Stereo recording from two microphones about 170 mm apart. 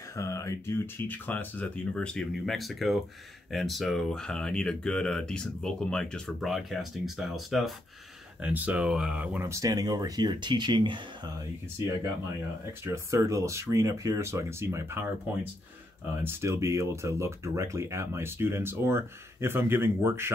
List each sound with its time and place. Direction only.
0.1 s speech: 20° left (ahead or behind); by 11.3 s 25° right (ahead or behind)
12.8 s speech: 15° right (ahead or behind)
16.2 s speech: 15° right (ahead or behind)